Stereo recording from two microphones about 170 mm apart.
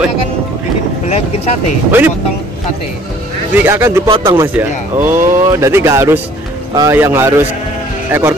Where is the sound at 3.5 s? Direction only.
15° right (ahead or behind).